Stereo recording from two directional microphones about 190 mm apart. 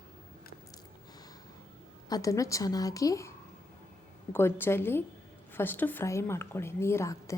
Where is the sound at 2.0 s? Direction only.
20° left (ahead or behind).